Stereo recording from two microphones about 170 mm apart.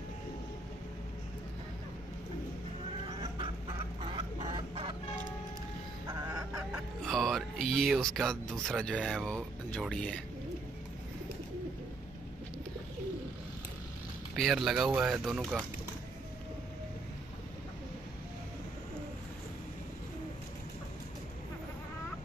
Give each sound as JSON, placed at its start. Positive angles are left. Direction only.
{"t": 4.0, "sound": "chicken", "side_deg": -30}
{"t": 6.0, "sound": "fowl", "side_deg": -20}
{"t": 7.0, "sound": "music", "side_deg": 0}
{"t": 8.6, "sound": "speech", "side_deg": 5}
{"t": 14.3, "sound": "speech", "side_deg": 0}